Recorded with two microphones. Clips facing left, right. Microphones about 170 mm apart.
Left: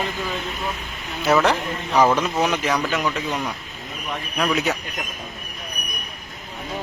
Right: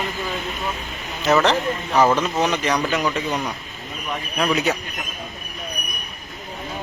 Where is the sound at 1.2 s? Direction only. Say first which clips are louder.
Right 1 dB; 10° left (ahead or behind).